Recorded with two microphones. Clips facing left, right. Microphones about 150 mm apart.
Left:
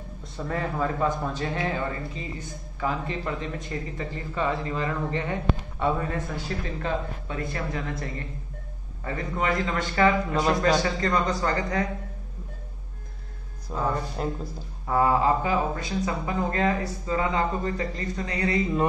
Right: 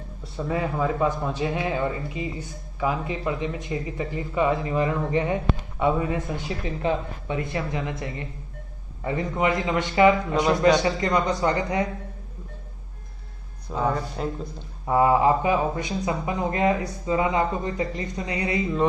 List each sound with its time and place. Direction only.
0.2 s a man's voice: 10° right (ahead or behind)
10.3 s speech: centre (ahead or behind)
10.8 s speech: 20° right (ahead or behind)
13.7 s speech: centre (ahead or behind)
14.9 s speech: 20° right (ahead or behind)